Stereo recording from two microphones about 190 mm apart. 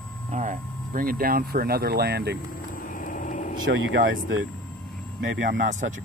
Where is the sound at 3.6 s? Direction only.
90° right.